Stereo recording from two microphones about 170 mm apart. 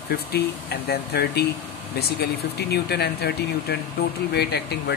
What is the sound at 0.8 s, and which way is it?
Speech, 70° left (ahead or behind).